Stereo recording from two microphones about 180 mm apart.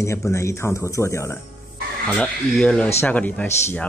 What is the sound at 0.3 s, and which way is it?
Speech, 15° left (ahead or behind).